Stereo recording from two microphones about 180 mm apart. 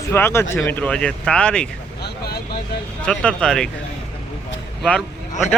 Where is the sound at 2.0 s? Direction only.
60° left (ahead or behind).